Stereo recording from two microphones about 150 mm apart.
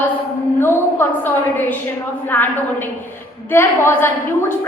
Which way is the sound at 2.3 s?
15° left (ahead or behind).